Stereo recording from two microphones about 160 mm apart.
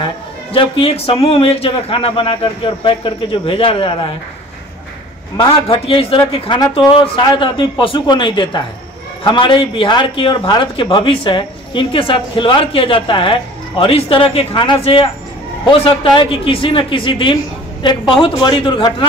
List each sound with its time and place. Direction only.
0.0 s a man's voice: 35° left (ahead or behind)
5.4 s a man's voice: 35° left (ahead or behind)